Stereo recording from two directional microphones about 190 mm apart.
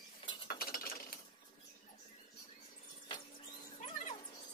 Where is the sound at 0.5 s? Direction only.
50° left (ahead or behind).